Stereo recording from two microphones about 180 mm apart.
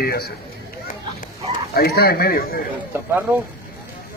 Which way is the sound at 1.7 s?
60° left (ahead or behind).